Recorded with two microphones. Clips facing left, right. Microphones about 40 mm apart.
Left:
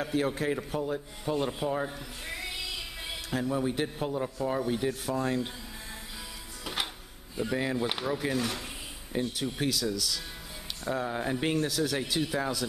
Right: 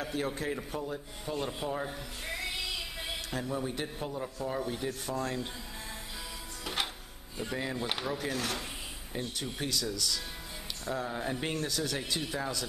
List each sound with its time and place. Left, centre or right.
0.0 s speech: centre
1.9 s music: centre
3.5 s speech: centre
6.6 s music: centre
7.5 s speech: centre
10.9 s speech: centre